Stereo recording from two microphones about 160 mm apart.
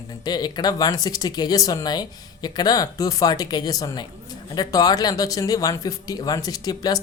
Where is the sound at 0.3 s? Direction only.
25° left (ahead or behind).